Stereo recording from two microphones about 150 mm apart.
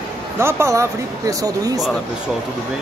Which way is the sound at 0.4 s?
15° right (ahead or behind).